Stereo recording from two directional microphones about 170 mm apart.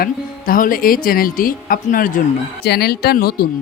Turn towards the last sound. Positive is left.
turn(degrees=60)  # may be behind; listen again after turning